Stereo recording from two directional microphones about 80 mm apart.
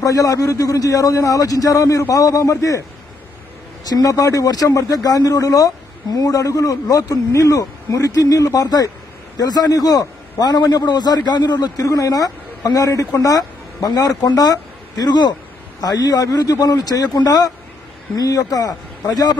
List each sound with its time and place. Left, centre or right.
0.0 s a man's voice: left
3.8 s a man's voice: left